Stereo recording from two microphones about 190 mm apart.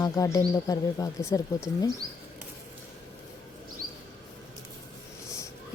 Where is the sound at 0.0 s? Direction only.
20° left (ahead or behind).